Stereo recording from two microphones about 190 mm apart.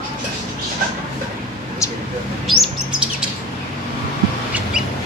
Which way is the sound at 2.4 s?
Centre (ahead or behind).